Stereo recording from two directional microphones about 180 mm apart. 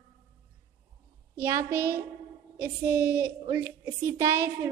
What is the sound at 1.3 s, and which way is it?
A woman's voice, 15° right (ahead or behind).